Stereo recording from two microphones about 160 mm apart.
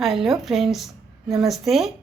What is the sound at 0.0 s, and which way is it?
A woman's voice, centre (ahead or behind).